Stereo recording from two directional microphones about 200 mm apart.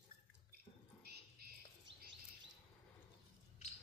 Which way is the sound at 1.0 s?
50° right (ahead or behind).